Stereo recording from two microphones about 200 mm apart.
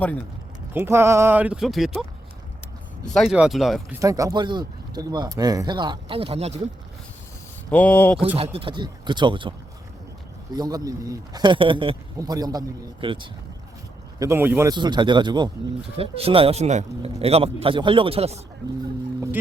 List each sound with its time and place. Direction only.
0.0 s speech: 5° left (ahead or behind)
0.7 s speech: 10° right (ahead or behind)
4.0 s speech: 15° right (ahead or behind)
7.7 s speech: 5° left (ahead or behind)
8.5 s speech: 25° right (ahead or behind)
14.2 s speech: 10° right (ahead or behind); by 18.3 s 30° right (ahead or behind)